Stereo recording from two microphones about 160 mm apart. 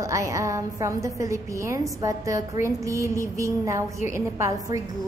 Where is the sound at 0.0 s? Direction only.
20° right (ahead or behind).